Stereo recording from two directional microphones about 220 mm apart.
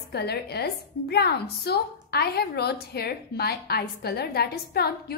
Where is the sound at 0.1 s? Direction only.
45° left (ahead or behind).